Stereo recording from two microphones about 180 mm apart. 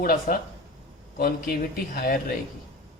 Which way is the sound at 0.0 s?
50° left (ahead or behind).